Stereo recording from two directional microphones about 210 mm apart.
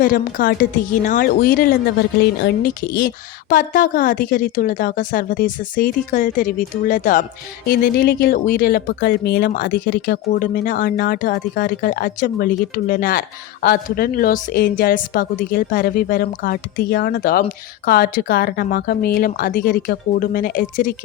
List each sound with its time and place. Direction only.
0.0 s a woman's voice: 40° left (ahead or behind)